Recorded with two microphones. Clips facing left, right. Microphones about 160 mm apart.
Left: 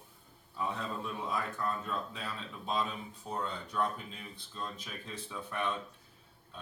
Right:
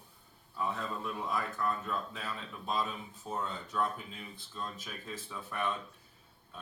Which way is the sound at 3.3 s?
5° right (ahead or behind).